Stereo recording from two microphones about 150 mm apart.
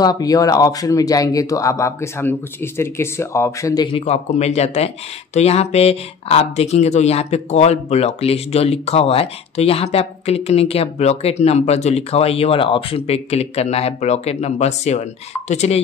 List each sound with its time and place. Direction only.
0.0 s speech: 25° left (ahead or behind)
3.9 s speech: 45° left (ahead or behind)